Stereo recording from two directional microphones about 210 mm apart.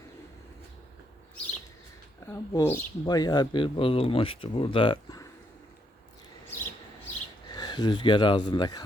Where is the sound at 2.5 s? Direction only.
15° left (ahead or behind).